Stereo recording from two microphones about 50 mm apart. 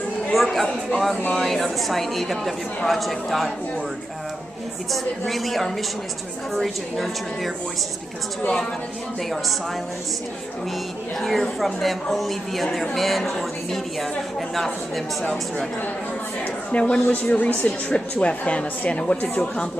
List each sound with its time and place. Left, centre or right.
0.3 s a woman's voice: centre
4.9 s a woman's voice: centre
11.1 s a woman's voice: centre
16.7 s a woman's voice: left